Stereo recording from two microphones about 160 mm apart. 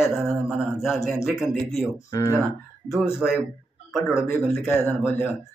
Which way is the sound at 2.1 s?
20° left (ahead or behind).